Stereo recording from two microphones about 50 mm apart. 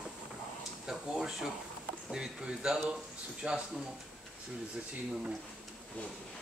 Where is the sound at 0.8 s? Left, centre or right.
Centre.